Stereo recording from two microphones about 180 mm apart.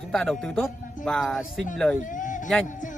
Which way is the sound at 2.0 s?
45° left (ahead or behind).